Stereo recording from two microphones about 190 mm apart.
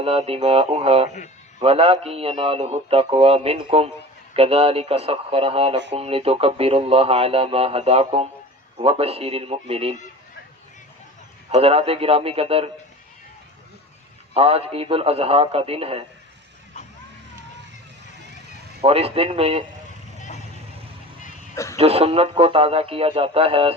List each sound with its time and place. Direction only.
0.0 s speech: 30° right (ahead or behind)
11.5 s speech: 30° right (ahead or behind)
14.3 s speech: 30° right (ahead or behind)
18.8 s speech: 30° right (ahead or behind)
21.5 s speech: 15° left (ahead or behind)
21.8 s speech: 30° right (ahead or behind)